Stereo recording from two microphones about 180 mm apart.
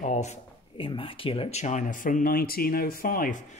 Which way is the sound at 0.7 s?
30° left (ahead or behind).